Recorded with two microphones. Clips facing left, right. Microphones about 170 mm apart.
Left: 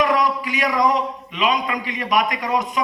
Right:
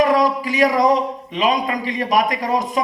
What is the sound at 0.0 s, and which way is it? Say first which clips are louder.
A man's voice: right 3 dB; 40° right (ahead or behind).